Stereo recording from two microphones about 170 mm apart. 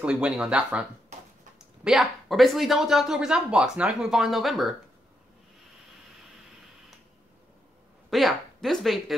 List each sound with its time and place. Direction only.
0.0 s speech: 5° right (ahead or behind)
1.9 s speech: centre (ahead or behind)
8.1 s speech: centre (ahead or behind)